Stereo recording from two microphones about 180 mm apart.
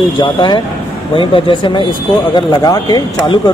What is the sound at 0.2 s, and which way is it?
Speech, 25° left (ahead or behind).